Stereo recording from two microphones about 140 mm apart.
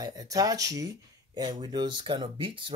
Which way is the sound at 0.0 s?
25° right (ahead or behind).